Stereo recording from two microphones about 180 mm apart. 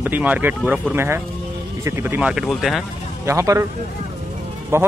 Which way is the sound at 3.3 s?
15° right (ahead or behind).